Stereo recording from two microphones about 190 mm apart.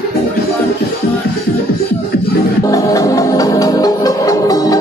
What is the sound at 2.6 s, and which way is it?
Music, 20° left (ahead or behind).